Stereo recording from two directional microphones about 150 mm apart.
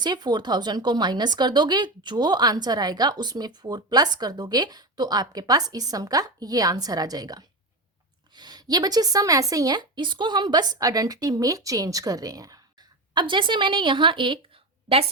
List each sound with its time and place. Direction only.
0.0 s a woman's voice: 30° right (ahead or behind)